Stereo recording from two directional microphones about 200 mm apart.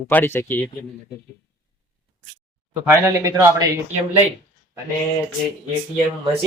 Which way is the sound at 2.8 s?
15° right (ahead or behind).